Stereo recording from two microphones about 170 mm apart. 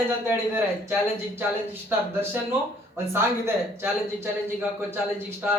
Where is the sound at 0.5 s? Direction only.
15° right (ahead or behind).